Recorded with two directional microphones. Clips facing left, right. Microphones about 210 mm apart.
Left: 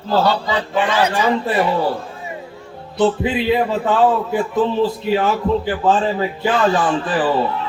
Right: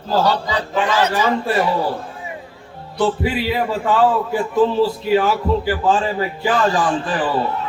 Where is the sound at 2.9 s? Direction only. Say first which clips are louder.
Left 2 dB; 20° left (ahead or behind).